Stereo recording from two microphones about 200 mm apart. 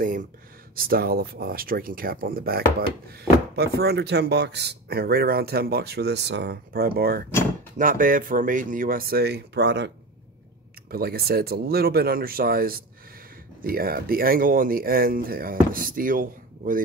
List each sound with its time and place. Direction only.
0.7 s speech: 50° right (ahead or behind)